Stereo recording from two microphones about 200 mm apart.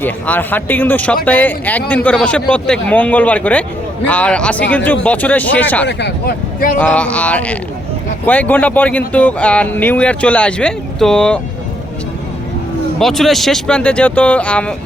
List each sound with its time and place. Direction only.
0.0 s speech: 10° left (ahead or behind)
5.8 s speech: 55° left (ahead or behind)
6.7 s speech: 5° left (ahead or behind)
13.0 s speech: centre (ahead or behind)